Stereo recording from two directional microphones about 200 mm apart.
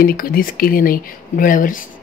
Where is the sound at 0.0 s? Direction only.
45° left (ahead or behind).